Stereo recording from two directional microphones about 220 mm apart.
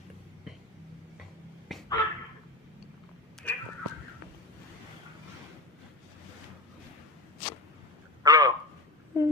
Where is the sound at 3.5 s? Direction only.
5° left (ahead or behind).